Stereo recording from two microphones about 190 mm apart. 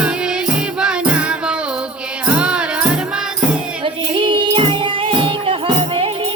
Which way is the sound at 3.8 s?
25° right (ahead or behind).